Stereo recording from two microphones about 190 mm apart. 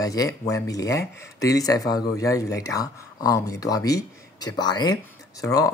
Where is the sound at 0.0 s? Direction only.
20° left (ahead or behind).